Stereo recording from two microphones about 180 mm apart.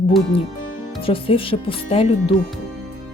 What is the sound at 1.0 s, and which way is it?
A woman's voice, 30° left (ahead or behind).